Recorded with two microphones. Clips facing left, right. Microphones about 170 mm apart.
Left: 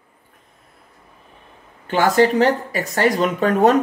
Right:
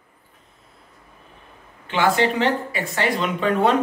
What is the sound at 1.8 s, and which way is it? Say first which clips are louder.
A woman's voice: left 4 dB; 40° left (ahead or behind).